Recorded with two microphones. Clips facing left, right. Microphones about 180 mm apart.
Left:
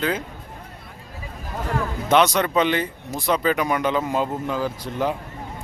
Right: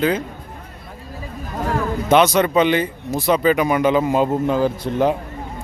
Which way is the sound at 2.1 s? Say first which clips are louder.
Right 3 dB; 5° right (ahead or behind).